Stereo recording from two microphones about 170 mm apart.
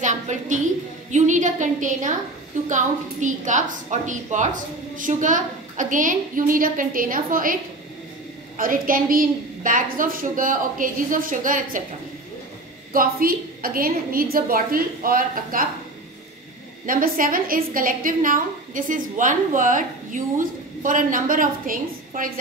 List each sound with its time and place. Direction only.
0.0 s a woman's voice: 45° right (ahead or behind)
8.5 s a woman's voice: 55° right (ahead or behind)
12.9 s a woman's voice: 60° right (ahead or behind)
16.8 s a woman's voice: 55° right (ahead or behind)